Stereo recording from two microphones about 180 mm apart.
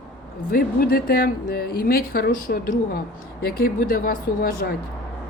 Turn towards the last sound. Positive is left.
turn(degrees=55)  # may be behind; listen again after turning